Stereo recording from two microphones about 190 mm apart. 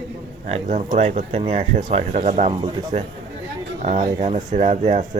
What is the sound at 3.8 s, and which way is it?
Speech, 40° right (ahead or behind).